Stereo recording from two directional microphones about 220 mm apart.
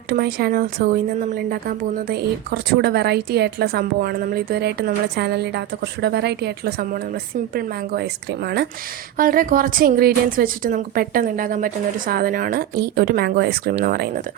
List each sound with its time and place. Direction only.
0.1 s a woman's voice: 45° right (ahead or behind)